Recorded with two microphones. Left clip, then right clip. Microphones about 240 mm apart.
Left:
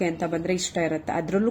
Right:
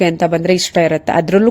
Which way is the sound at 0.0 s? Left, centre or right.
Right.